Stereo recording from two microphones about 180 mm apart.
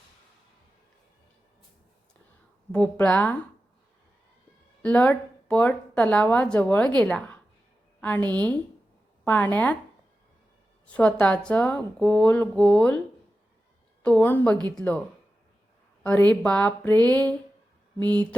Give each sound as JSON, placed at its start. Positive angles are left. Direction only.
{"t": 2.7, "sound": "a woman's voice", "side_deg": 5}
{"t": 4.8, "sound": "a woman's voice", "side_deg": 10}
{"t": 10.9, "sound": "a woman's voice", "side_deg": 5}
{"t": 14.0, "sound": "a woman's voice", "side_deg": 10}
{"t": 16.0, "sound": "a woman's voice", "side_deg": 10}
{"t": 18.0, "sound": "mantra", "side_deg": -25}